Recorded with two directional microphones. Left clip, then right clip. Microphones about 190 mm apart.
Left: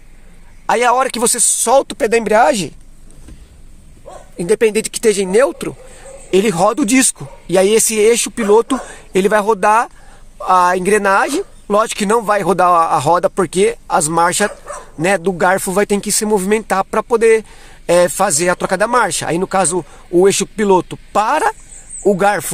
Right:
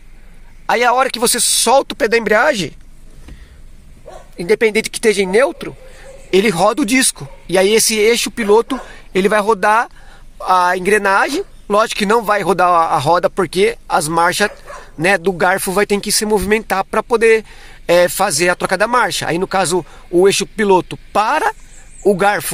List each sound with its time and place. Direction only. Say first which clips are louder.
0.7 s speech: even; 10° left (ahead or behind)
4.4 s speech: even; 15° left (ahead or behind)